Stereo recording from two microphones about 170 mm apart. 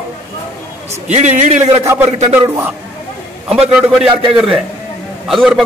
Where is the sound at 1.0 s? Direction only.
45° right (ahead or behind).